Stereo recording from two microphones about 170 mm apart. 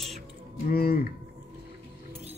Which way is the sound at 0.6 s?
65° left (ahead or behind).